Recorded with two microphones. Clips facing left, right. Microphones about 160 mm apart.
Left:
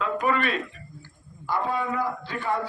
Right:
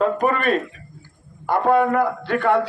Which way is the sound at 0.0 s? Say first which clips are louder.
Right 6 dB; 45° right (ahead or behind).